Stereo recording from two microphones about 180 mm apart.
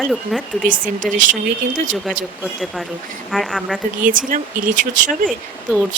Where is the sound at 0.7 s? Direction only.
45° right (ahead or behind).